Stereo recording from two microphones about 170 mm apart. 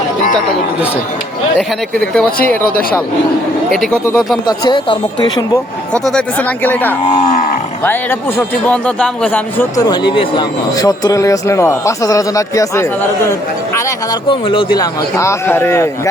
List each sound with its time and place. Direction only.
2.0 s speech: 5° left (ahead or behind)
4.4 s speech: 25° left (ahead or behind)
5.9 s speech: 10° left (ahead or behind)
7.0 s livestock: 40° left (ahead or behind)
8.4 s speech: 10° left (ahead or behind)
9.7 s speech: 20° left (ahead or behind)
14.3 s speech: 30° left (ahead or behind)
15.1 s speech: 15° left (ahead or behind)